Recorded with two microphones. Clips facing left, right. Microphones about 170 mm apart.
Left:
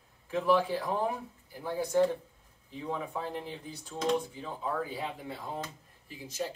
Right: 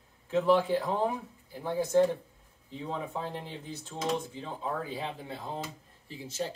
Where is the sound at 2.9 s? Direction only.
25° right (ahead or behind).